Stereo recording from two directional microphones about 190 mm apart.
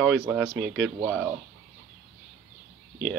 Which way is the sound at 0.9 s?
5° right (ahead or behind).